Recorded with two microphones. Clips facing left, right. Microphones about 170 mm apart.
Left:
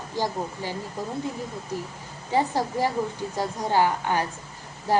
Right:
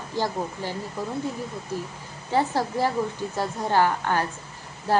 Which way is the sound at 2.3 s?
15° left (ahead or behind).